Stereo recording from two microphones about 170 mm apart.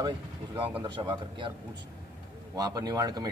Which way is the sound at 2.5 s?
20° right (ahead or behind).